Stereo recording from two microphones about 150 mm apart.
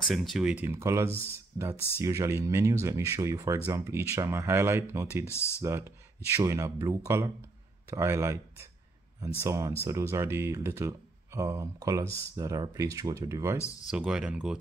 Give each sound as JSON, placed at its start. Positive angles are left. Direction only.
{"t": 0.1, "sound": "speech", "side_deg": 0}
{"t": 0.7, "sound": "speech", "side_deg": -15}
{"t": 5.2, "sound": "speech", "side_deg": 15}
{"t": 5.6, "sound": "speech", "side_deg": -20}
{"t": 13.8, "sound": "speech", "side_deg": -5}